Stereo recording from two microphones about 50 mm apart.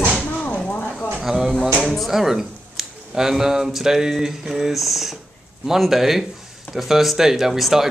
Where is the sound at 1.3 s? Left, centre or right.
Centre.